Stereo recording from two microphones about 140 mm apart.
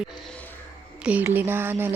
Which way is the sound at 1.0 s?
10° right (ahead or behind).